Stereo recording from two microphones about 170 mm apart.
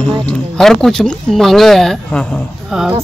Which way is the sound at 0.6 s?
Centre (ahead or behind).